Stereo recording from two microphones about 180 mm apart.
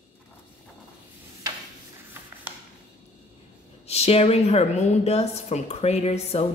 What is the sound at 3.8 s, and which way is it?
A woman's voice, 35° left (ahead or behind).